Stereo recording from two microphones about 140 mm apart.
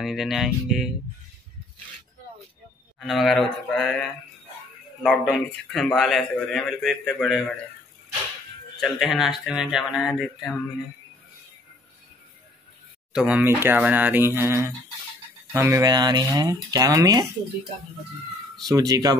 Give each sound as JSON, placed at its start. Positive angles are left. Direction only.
{"t": 0.0, "sound": "a man's voice", "side_deg": 0}
{"t": 3.0, "sound": "a man's voice", "side_deg": 0}
{"t": 5.0, "sound": "a man's voice", "side_deg": 5}
{"t": 8.7, "sound": "a man's voice", "side_deg": 5}
{"t": 13.1, "sound": "speech", "side_deg": -5}
{"t": 18.7, "sound": "speech", "side_deg": -25}